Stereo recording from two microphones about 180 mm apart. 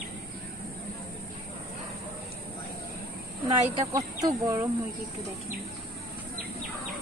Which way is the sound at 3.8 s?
15° right (ahead or behind).